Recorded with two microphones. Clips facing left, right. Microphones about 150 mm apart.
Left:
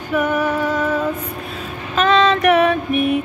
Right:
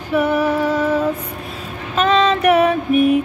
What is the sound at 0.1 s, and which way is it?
Female singing, 10° right (ahead or behind).